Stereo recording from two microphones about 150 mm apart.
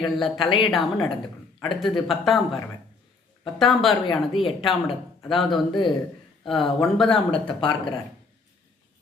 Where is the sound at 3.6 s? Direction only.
Centre (ahead or behind).